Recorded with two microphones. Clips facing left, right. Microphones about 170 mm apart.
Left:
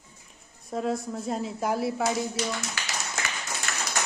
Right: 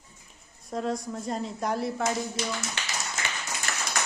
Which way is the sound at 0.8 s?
5° left (ahead or behind).